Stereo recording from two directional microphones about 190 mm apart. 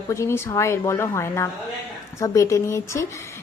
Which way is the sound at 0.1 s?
15° left (ahead or behind).